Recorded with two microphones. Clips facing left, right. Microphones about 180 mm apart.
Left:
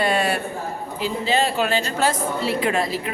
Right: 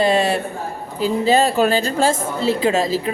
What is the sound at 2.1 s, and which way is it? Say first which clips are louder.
A woman's voice: right 4 dB; 25° right (ahead or behind).